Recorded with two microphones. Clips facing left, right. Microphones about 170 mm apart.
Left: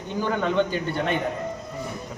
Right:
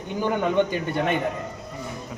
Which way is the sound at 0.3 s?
15° right (ahead or behind).